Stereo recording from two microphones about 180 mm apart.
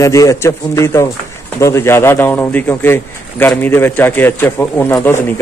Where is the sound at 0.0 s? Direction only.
15° left (ahead or behind).